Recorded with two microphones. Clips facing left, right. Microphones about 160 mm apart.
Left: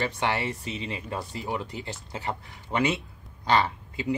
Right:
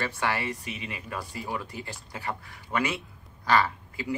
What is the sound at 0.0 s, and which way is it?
Speech, 20° left (ahead or behind).